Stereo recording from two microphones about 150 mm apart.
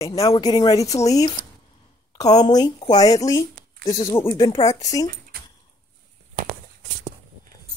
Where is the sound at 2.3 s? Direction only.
25° left (ahead or behind).